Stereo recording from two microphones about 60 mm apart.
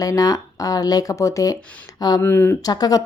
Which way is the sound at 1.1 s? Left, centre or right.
Left.